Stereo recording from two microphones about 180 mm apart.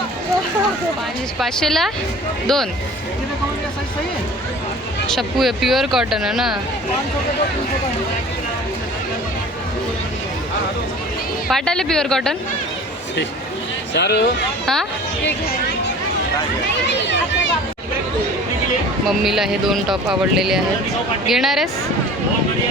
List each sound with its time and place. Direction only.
1.4 s speech: centre (ahead or behind)
5.0 s speech: centre (ahead or behind)
11.4 s speech: 5° left (ahead or behind)
13.9 s speech: 65° left (ahead or behind)
16.9 s speech: 80° left
19.0 s speech: centre (ahead or behind)